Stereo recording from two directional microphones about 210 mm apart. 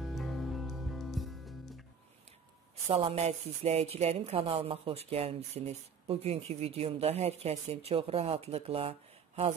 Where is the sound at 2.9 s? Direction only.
30° right (ahead or behind).